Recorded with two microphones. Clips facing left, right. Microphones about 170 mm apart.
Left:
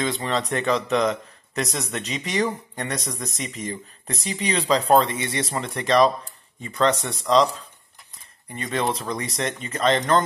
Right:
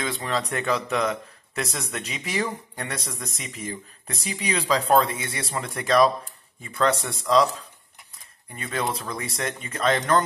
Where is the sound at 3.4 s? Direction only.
5° right (ahead or behind).